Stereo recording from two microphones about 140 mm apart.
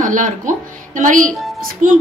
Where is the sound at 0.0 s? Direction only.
65° right (ahead or behind).